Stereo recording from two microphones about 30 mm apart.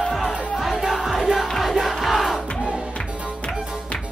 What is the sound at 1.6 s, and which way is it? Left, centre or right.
Crowd, centre.